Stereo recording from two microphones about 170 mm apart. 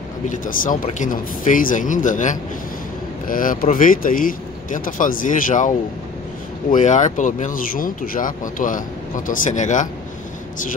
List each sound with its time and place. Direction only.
0.3 s speech: 50° left (ahead or behind)
6.7 s speech: 45° left (ahead or behind)